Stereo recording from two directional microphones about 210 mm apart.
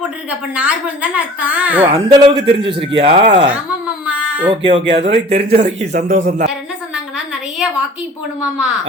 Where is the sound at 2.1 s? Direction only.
25° right (ahead or behind).